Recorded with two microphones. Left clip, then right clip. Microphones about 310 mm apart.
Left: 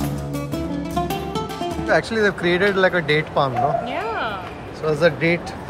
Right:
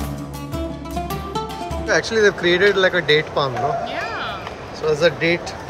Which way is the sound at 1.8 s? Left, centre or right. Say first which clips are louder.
Right 2 dB; centre.